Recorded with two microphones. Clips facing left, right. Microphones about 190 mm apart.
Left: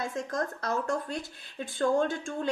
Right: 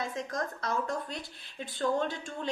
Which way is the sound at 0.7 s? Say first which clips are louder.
Left 2 dB; 45° left (ahead or behind).